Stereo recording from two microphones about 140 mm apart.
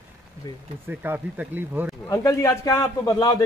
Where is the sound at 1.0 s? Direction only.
15° right (ahead or behind).